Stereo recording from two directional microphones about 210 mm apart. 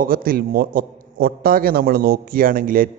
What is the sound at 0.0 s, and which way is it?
A man's voice, 45° right (ahead or behind).